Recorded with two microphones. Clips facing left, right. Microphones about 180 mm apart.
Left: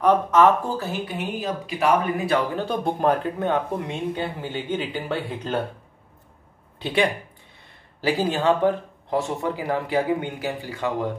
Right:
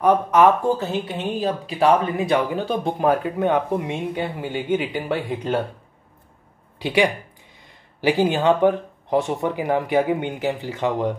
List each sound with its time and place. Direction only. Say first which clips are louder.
0.0 s speech: right 1 dB; 15° right (ahead or behind)
2.5 s speech: right 2 dB; centre (ahead or behind)
8.0 s speech: right 3 dB; 15° right (ahead or behind)